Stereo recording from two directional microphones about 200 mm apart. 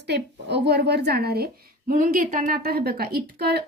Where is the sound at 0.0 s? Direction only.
55° right (ahead or behind).